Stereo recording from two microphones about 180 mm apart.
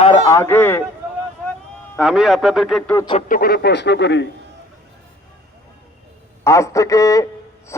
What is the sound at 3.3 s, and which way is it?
Speech, 60° left (ahead or behind).